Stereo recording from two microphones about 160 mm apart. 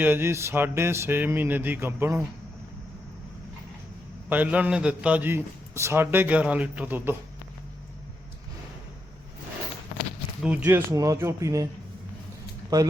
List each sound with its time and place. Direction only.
0.0 s a man's voice: 15° right (ahead or behind)
4.3 s a man's voice: 10° right (ahead or behind)
10.4 s a man's voice: 10° right (ahead or behind)
12.7 s speech: 20° right (ahead or behind)